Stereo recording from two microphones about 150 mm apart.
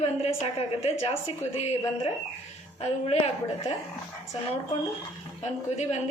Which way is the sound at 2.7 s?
45° left (ahead or behind).